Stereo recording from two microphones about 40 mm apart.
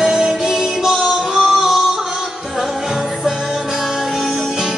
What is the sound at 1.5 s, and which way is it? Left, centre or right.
Singing, centre.